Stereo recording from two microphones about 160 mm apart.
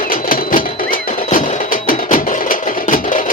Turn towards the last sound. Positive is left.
turn(degrees=55)  # may be behind; listen again after turning